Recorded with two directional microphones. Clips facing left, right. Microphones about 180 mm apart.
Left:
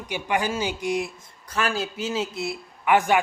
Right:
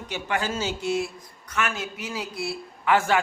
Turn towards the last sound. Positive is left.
turn(degrees=15)  # may be behind; listen again after turning